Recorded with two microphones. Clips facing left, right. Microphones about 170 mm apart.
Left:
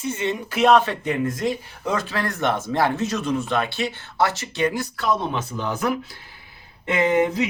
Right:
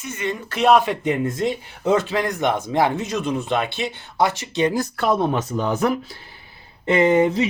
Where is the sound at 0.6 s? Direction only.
10° right (ahead or behind).